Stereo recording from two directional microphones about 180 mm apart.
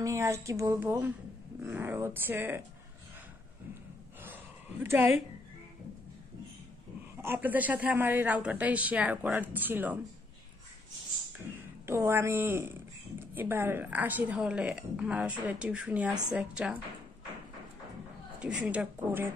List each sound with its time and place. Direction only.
0.0 s a woman's voice: 15° right (ahead or behind)
4.8 s a woman's voice: 10° right (ahead or behind)
7.2 s a woman's voice: 10° right (ahead or behind)
11.8 s a woman's voice: 15° right (ahead or behind)
18.4 s a woman's voice: 5° right (ahead or behind)